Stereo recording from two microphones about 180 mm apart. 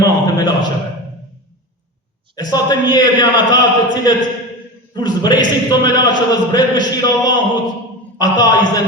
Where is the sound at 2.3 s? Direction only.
20° left (ahead or behind).